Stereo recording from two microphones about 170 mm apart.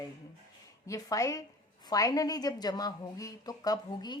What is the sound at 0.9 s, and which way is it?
A woman's voice, 20° left (ahead or behind).